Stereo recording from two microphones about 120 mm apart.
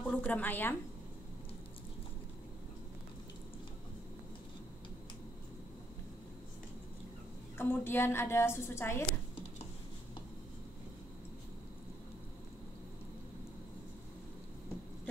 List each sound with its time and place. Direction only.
0.0 s a woman's voice: 10° left (ahead or behind)
7.5 s a woman's voice: 20° left (ahead or behind)